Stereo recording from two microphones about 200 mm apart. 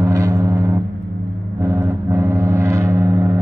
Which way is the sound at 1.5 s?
15° right (ahead or behind).